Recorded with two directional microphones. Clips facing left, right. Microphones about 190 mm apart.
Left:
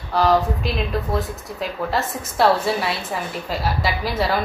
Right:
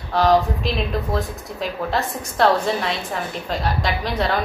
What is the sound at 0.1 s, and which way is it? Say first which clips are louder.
Speech: right 1 dB; centre (ahead or behind).